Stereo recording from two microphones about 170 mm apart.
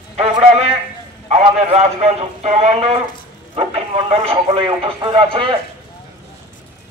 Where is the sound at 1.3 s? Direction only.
40° right (ahead or behind).